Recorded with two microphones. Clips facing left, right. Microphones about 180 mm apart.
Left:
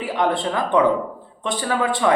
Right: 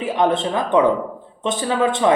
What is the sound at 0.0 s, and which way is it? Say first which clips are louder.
Speech: right 3 dB; 20° right (ahead or behind).